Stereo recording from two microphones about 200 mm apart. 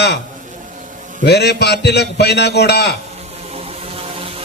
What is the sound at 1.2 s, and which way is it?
A man's voice, 55° left (ahead or behind).